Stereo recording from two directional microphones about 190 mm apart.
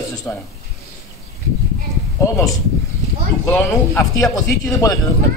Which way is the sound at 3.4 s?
10° left (ahead or behind).